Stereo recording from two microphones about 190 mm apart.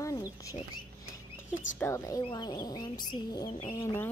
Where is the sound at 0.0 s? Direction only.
20° left (ahead or behind).